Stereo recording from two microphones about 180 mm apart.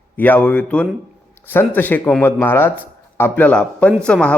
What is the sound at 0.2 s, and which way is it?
A man's voice, 10° left (ahead or behind).